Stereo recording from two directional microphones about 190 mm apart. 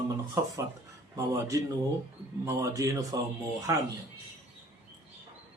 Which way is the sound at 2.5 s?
15° right (ahead or behind).